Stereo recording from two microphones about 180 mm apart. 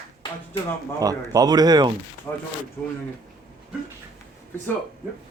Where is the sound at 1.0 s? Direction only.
20° right (ahead or behind).